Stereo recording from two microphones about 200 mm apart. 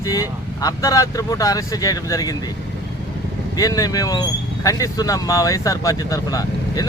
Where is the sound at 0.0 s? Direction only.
15° left (ahead or behind).